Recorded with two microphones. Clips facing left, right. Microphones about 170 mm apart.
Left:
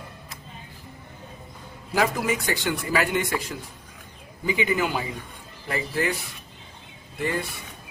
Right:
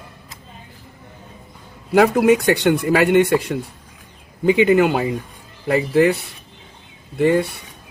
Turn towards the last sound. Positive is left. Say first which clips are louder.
# right 12 dB
turn(degrees=-60)  # may be behind; listen again after turning